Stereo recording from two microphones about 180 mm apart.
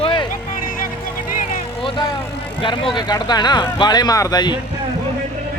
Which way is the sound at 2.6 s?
25° left (ahead or behind).